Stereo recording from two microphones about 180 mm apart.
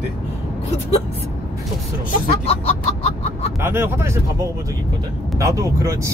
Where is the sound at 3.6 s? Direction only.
10° right (ahead or behind).